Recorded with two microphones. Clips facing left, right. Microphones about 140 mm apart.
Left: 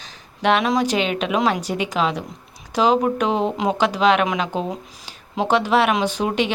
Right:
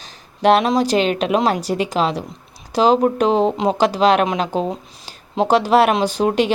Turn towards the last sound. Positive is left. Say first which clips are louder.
# right 4 dB
turn(degrees=-40)  # may be behind; listen again after turning